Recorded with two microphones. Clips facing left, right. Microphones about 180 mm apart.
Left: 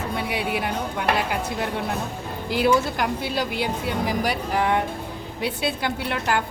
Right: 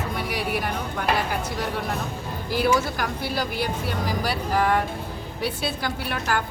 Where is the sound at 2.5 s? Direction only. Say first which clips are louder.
Left 2 dB; 20° left (ahead or behind).